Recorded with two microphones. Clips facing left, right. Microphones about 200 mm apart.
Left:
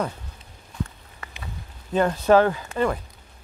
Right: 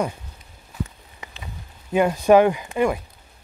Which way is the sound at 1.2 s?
15° right (ahead or behind).